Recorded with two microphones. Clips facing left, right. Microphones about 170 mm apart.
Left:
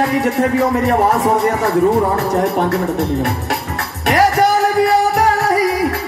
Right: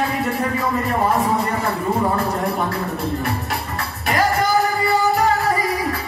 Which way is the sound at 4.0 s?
75° left (ahead or behind).